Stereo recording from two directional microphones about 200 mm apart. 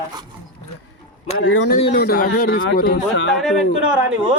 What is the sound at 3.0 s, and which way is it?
Speech, 65° left (ahead or behind).